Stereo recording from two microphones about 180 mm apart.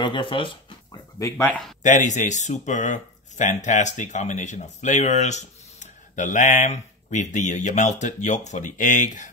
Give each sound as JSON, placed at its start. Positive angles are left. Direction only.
{"t": 0.0, "sound": "speech", "side_deg": 25}
{"t": 1.2, "sound": "speech", "side_deg": 10}
{"t": 1.8, "sound": "speech", "side_deg": 45}